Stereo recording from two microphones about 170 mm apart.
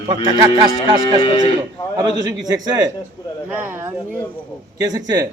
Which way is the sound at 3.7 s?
15° right (ahead or behind).